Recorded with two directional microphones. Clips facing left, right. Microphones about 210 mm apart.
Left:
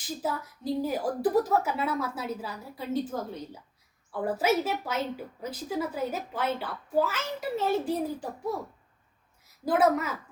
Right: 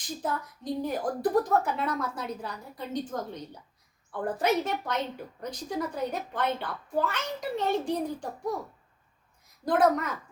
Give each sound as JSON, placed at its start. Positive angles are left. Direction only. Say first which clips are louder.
{"t": 0.2, "sound": "a woman's voice", "louder": "even", "side_deg": 5}
{"t": 9.6, "sound": "a woman's voice", "louder": "even", "side_deg": 5}